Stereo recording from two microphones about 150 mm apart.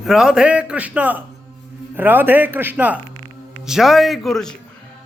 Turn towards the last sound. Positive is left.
turn(degrees=0)  # may be behind; listen again after turning